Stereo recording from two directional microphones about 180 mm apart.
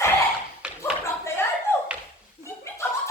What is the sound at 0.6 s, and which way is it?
Clapping, 5° right (ahead or behind).